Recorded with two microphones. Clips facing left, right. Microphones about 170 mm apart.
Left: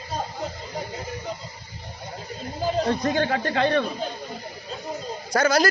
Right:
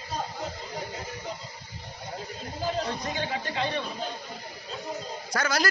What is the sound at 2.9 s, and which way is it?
Speech, 75° left (ahead or behind).